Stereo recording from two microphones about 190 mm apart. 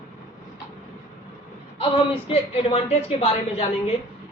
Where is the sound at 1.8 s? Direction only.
30° left (ahead or behind).